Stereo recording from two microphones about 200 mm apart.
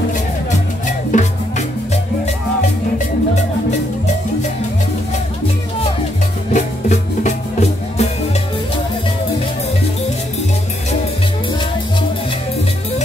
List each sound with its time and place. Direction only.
1.1 s music: 40° left (ahead or behind)
6.5 s music: 35° left (ahead or behind)